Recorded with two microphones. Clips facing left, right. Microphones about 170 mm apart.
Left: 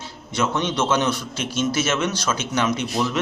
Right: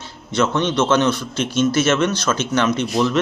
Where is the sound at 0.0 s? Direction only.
10° left (ahead or behind).